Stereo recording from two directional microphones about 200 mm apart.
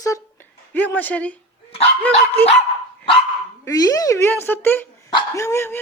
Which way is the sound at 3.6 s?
15° left (ahead or behind).